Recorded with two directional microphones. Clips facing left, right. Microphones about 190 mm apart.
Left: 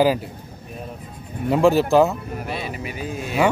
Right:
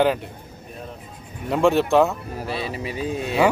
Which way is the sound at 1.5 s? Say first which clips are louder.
Left 2 dB; centre (ahead or behind).